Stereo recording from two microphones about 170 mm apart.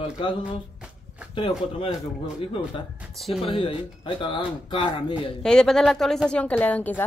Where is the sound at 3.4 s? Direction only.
30° left (ahead or behind).